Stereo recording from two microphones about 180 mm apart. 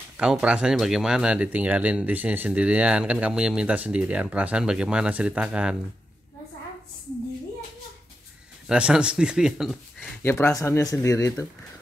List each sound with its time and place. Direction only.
0.2 s speech: 5° right (ahead or behind)
8.6 s speech: 5° right (ahead or behind)
9.9 s speech: 10° left (ahead or behind)